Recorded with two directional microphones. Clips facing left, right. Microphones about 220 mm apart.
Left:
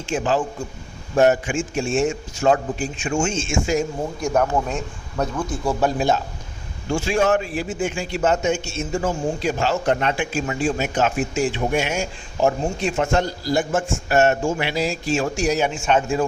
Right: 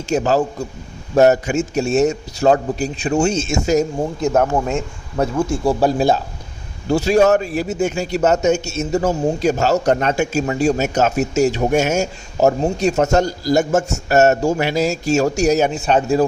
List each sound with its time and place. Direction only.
0.0 s a man's voice: 40° right (ahead or behind)
4.2 s a man's voice: 25° right (ahead or behind)